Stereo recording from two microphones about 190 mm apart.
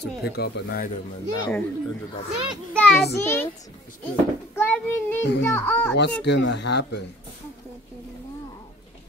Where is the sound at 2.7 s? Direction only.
5° left (ahead or behind).